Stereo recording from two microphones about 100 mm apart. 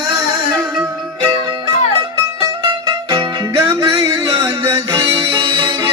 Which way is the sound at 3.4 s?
35° right (ahead or behind).